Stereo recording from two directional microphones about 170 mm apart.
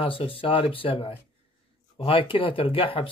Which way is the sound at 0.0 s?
30° left (ahead or behind).